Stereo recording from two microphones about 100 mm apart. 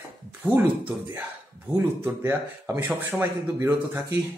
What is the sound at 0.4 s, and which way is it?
Speech, 25° right (ahead or behind).